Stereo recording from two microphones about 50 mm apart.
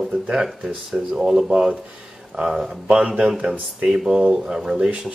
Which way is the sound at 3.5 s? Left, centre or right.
Centre.